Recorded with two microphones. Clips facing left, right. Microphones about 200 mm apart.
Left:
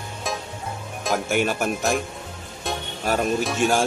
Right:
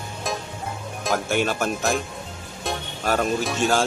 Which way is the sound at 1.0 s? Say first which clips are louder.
Even; 5° left (ahead or behind).